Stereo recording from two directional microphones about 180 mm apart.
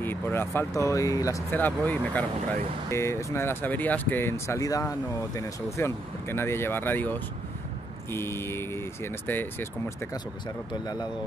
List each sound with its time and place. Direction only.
0.0 s speech: 10° left (ahead or behind)
10.7 s speech: 20° left (ahead or behind)